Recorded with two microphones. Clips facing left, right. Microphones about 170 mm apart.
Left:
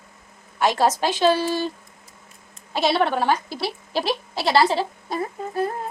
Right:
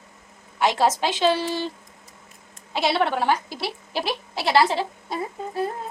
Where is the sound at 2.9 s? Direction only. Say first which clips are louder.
Left 1 dB; 15° left (ahead or behind).